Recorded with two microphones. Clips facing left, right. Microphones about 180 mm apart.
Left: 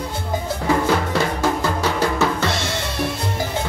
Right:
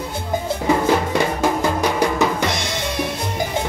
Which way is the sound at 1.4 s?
15° right (ahead or behind).